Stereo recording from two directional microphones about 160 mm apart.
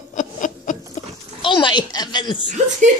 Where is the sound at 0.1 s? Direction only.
55° left (ahead or behind).